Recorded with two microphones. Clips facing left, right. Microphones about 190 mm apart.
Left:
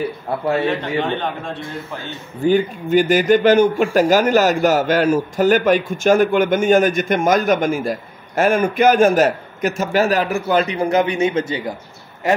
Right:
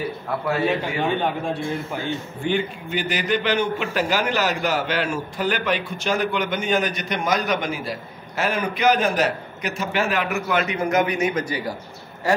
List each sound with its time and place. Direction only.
1.0 s speech: 10° right (ahead or behind)
2.4 s speech: 40° left (ahead or behind); by 12.4 s 20° left (ahead or behind)